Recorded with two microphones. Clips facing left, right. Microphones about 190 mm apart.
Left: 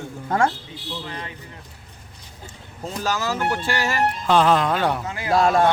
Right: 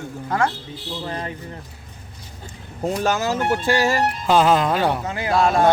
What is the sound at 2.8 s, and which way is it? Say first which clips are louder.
Speech: right 4 dB; 55° right (ahead or behind).